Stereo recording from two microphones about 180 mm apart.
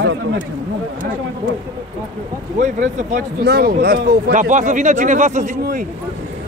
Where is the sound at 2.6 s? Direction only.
50° right (ahead or behind).